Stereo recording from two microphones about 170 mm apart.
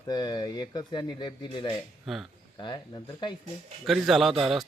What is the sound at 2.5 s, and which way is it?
Speech, 25° left (ahead or behind).